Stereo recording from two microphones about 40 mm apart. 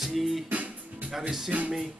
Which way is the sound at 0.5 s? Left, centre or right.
Right.